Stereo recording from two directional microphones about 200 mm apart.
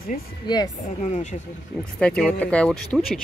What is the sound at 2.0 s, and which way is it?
Speech, 5° left (ahead or behind).